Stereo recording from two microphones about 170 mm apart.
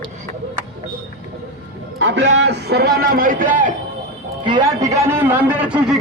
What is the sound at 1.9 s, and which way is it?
Speech, 90° right.